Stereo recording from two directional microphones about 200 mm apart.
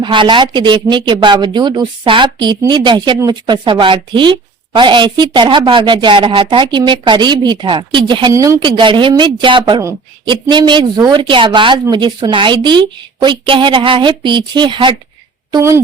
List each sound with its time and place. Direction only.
0.0 s a woman's voice: 25° right (ahead or behind)